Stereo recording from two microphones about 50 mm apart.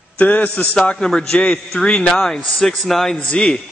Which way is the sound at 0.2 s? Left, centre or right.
Left.